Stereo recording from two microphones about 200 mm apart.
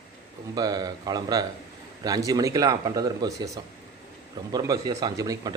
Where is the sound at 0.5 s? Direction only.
20° right (ahead or behind).